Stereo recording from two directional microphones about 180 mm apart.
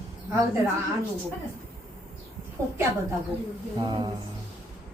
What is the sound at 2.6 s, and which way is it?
A woman's voice, 15° right (ahead or behind).